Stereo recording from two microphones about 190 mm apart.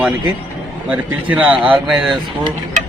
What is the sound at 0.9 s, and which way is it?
Speech, 5° right (ahead or behind).